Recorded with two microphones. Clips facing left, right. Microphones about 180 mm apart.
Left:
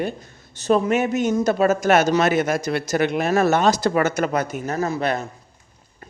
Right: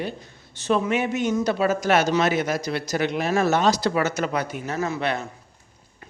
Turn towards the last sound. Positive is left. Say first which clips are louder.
# left 3 dB
turn(degrees=40)  # may be behind; listen again after turning